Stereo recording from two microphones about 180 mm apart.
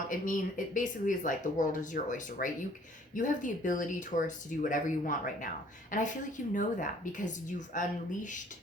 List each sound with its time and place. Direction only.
0.1 s speech: 45° left (ahead or behind)